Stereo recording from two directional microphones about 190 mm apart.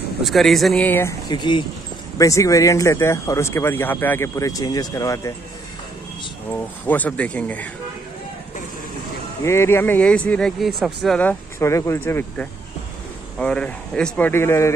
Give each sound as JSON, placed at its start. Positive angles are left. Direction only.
{"t": 0.2, "sound": "speech", "side_deg": 0}
{"t": 1.3, "sound": "speech", "side_deg": 25}
{"t": 6.5, "sound": "speech", "side_deg": 10}
{"t": 9.4, "sound": "speech", "side_deg": 15}